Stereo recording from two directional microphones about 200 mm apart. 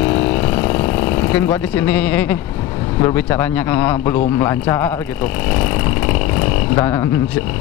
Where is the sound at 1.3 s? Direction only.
10° left (ahead or behind).